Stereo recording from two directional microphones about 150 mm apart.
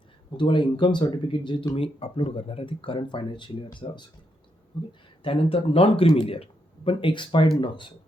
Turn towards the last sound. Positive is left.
turn(degrees=35)  # may be behind; listen again after turning